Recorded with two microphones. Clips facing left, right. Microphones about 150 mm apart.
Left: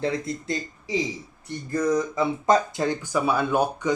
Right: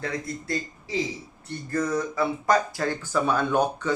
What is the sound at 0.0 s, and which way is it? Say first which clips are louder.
Speech: left 5 dB; 25° left (ahead or behind).